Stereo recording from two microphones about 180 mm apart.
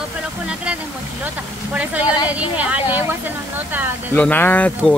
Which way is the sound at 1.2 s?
10° right (ahead or behind).